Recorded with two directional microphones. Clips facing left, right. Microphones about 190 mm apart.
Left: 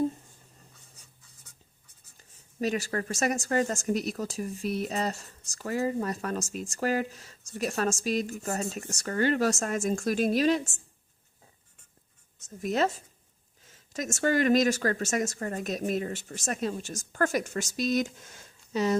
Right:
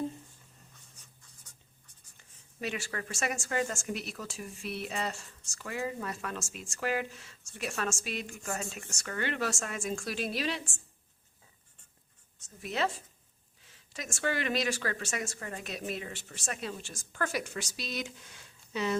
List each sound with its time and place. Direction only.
2.6 s speech: 40° left (ahead or behind)
12.6 s speech: 45° left (ahead or behind)